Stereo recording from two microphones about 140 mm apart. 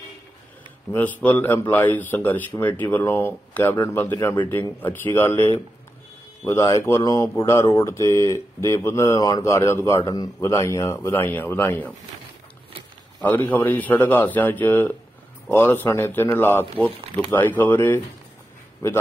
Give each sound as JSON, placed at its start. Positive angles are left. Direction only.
{"t": 0.9, "sound": "speech", "side_deg": 10}
{"t": 13.2, "sound": "speech", "side_deg": 10}